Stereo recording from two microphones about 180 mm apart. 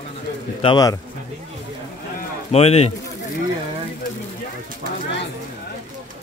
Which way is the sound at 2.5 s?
35° left (ahead or behind).